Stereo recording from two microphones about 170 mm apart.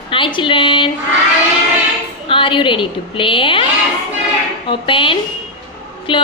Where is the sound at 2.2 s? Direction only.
30° left (ahead or behind).